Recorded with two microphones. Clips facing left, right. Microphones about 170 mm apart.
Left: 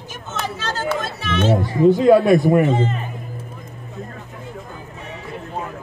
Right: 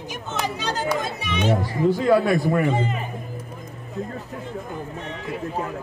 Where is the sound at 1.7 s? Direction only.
20° left (ahead or behind).